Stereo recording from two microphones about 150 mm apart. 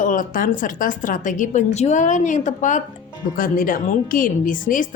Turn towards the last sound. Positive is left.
turn(degrees=65)  # may be behind; listen again after turning